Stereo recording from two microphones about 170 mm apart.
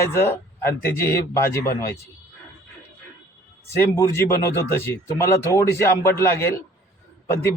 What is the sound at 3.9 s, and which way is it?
A man's voice, 15° left (ahead or behind).